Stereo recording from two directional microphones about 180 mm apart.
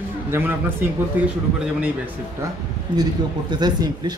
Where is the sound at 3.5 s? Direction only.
25° right (ahead or behind).